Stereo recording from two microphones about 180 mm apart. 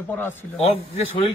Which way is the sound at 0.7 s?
30° left (ahead or behind).